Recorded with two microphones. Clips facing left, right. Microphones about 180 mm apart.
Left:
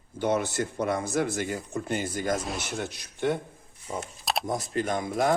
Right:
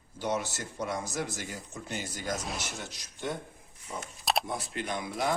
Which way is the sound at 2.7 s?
60° left (ahead or behind).